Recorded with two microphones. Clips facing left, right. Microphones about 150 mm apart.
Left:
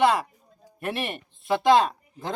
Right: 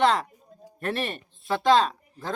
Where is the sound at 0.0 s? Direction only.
10° left (ahead or behind).